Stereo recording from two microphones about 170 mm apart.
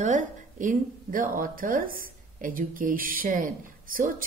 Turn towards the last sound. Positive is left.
turn(degrees=-55)  # may be behind; listen again after turning